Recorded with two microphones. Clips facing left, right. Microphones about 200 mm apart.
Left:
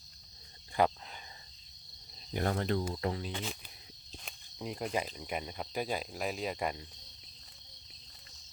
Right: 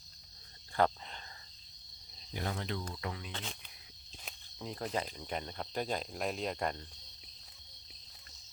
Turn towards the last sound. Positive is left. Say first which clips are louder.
# left 1 dB
turn(degrees=5)  # may be behind; listen again after turning